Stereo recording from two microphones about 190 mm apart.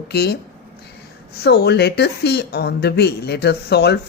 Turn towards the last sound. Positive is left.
turn(degrees=60)  # may be behind; listen again after turning